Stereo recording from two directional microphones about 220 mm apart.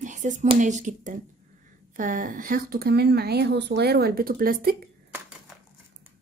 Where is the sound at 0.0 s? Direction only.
35° right (ahead or behind).